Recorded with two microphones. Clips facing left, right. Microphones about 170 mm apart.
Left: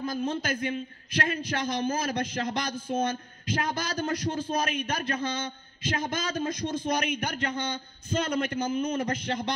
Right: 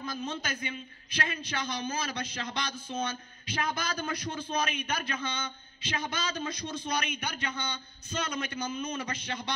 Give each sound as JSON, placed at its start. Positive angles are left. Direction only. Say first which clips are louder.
{"t": 0.0, "sound": "a man's voice", "louder": "left 6 dB", "side_deg": 50}